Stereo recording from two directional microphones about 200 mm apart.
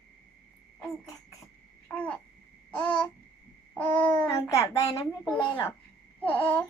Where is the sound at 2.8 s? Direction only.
25° left (ahead or behind).